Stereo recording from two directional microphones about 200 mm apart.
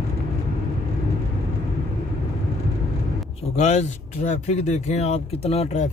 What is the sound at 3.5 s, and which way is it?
Speech, 35° left (ahead or behind).